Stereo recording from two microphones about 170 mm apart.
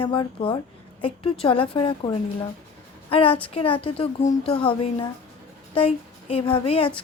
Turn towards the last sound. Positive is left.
turn(degrees=30)  # may be behind; listen again after turning